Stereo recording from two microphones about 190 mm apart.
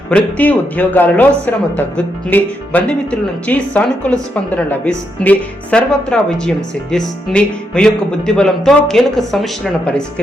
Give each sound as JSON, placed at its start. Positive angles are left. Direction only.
{"t": 0.1, "sound": "speech", "side_deg": 10}